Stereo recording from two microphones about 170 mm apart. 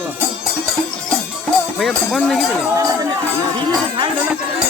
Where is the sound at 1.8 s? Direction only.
Centre (ahead or behind).